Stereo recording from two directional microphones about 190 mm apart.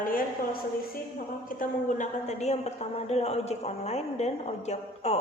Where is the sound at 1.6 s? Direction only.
40° left (ahead or behind).